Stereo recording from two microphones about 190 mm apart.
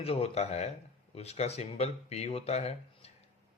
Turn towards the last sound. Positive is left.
turn(degrees=35)  # may be behind; listen again after turning